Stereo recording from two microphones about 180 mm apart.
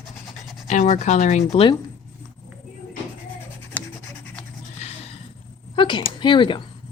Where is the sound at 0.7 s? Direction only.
45° left (ahead or behind).